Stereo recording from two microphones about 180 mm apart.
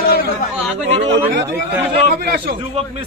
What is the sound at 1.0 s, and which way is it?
Speech, 80° right.